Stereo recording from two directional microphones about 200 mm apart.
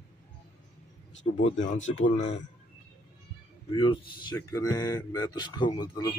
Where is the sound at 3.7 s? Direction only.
20° left (ahead or behind).